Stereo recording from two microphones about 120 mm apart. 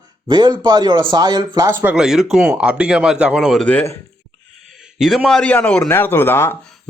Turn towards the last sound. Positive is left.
turn(degrees=20)  # may be behind; listen again after turning